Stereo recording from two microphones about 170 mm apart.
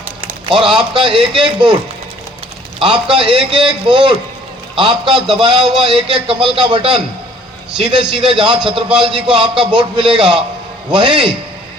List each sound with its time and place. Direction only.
0.2 s a sound: 30° right (ahead or behind)
0.8 s a man's voice: 30° right (ahead or behind)
2.7 s a man's voice: 30° right (ahead or behind)